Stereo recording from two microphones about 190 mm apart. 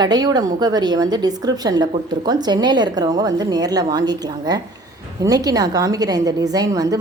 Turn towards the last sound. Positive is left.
turn(degrees=-20)  # may be behind; listen again after turning